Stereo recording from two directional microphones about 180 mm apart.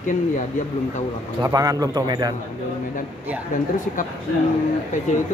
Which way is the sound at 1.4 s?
20° right (ahead or behind).